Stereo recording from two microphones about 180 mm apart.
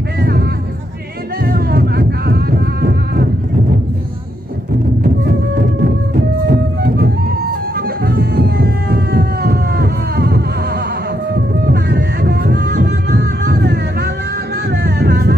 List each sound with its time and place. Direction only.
0.2 s a sound: 60° right (ahead or behind)
1.4 s music: 55° right (ahead or behind)
6.1 s music: 55° right (ahead or behind)